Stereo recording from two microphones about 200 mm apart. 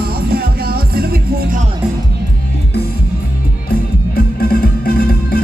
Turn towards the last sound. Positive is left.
turn(degrees=50)  # may be behind; listen again after turning